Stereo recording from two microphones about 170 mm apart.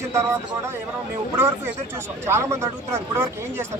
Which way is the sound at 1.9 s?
15° right (ahead or behind).